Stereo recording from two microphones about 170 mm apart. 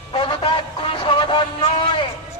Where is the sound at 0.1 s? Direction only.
30° left (ahead or behind).